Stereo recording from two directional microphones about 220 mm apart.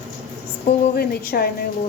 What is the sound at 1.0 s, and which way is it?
Speech, 45° left (ahead or behind).